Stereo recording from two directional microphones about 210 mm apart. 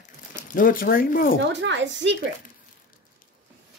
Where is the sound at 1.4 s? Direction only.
60° right (ahead or behind).